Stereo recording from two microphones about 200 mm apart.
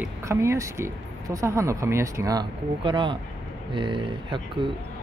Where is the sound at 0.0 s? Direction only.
15° right (ahead or behind).